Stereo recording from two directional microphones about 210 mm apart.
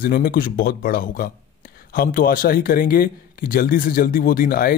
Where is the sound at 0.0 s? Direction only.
45° left (ahead or behind).